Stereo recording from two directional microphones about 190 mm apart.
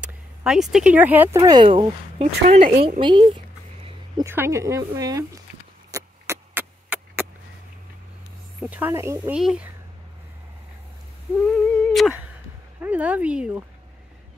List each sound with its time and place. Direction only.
0.0 s a woman's voice: 5° right (ahead or behind); by 3.3 s 25° right (ahead or behind)
4.2 s speech: 15° right (ahead or behind)
5.9 s a sound: 15° right (ahead or behind)
8.5 s speech: 10° right (ahead or behind)
9.3 s speech: 5° right (ahead or behind)
11.4 s a sound: 5° left (ahead or behind)
12.8 s speech: 10° right (ahead or behind)